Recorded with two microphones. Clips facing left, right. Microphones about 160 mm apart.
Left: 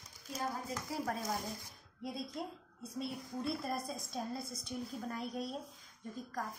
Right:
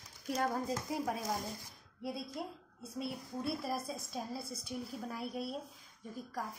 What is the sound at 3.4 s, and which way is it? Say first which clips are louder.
A woman's voice: right 1 dB; 5° right (ahead or behind).